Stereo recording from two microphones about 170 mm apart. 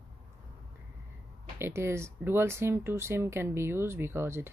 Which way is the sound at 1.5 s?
15° right (ahead or behind).